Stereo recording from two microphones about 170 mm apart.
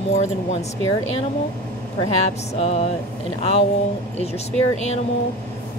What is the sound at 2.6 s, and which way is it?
Speech, 40° left (ahead or behind).